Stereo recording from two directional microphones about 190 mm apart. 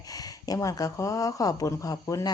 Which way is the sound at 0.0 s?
20° left (ahead or behind).